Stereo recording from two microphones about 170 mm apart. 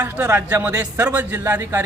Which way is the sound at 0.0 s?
10° right (ahead or behind).